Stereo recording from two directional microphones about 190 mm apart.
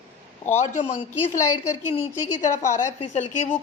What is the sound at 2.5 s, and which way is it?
A woman's voice, 40° left (ahead or behind).